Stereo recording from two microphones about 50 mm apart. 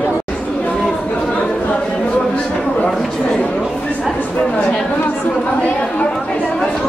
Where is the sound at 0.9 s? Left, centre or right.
Left.